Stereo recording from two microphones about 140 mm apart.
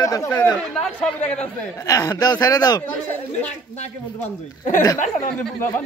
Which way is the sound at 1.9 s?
25° left (ahead or behind).